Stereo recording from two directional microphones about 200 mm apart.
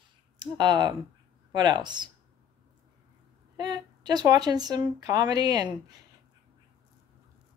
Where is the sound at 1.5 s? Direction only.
20° right (ahead or behind).